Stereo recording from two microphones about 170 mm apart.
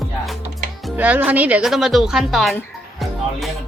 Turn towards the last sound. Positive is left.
turn(degrees=0)  # may be behind; listen again after turning